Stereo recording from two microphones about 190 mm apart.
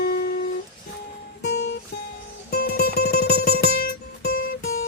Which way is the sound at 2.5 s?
55° left (ahead or behind).